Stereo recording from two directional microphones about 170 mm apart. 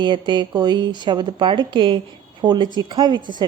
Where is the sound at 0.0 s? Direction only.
25° right (ahead or behind).